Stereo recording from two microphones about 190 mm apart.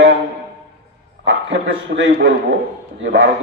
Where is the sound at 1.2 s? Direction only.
75° right (ahead or behind).